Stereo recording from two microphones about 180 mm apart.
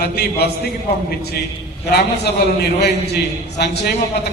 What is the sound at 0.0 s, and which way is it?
Speech, 65° left (ahead or behind).